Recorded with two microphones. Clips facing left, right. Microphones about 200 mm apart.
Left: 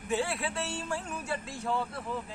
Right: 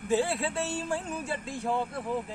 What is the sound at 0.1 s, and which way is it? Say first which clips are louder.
Speech: right 4 dB; 30° right (ahead or behind).